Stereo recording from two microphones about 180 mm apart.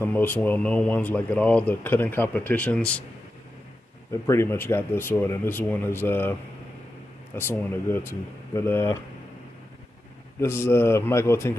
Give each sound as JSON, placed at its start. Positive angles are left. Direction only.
{"t": 0.0, "sound": "speech", "side_deg": 10}
{"t": 4.1, "sound": "speech", "side_deg": 15}
{"t": 7.3, "sound": "speech", "side_deg": 10}
{"t": 10.4, "sound": "speech", "side_deg": 15}